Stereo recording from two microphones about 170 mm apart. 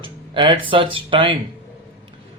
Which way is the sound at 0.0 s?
30° right (ahead or behind).